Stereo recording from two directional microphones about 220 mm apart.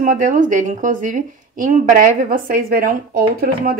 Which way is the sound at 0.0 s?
35° right (ahead or behind).